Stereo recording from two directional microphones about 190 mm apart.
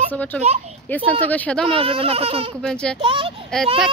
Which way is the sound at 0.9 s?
10° left (ahead or behind).